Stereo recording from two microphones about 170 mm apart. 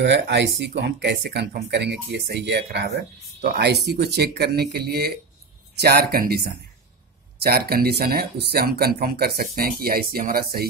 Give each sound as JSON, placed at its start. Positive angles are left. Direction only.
{"t": 0.0, "sound": "speech", "side_deg": -90}
{"t": 3.3, "sound": "speech", "side_deg": -70}